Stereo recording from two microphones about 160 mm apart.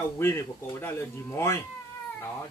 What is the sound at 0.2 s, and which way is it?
Speech, 15° left (ahead or behind).